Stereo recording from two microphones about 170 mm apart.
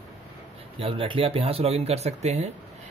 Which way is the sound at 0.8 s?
30° right (ahead or behind).